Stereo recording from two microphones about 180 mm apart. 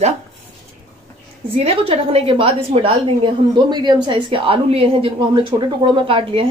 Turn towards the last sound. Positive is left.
turn(degrees=-30)  # may be behind; listen again after turning